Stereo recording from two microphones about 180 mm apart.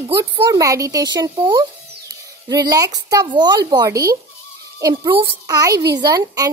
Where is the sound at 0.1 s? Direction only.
20° right (ahead or behind).